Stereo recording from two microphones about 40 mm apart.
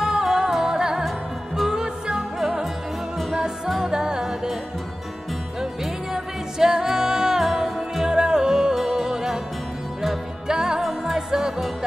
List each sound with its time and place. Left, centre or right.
0.0 s music: centre
5.6 s music: centre
8.1 s music: centre
10.5 s music: centre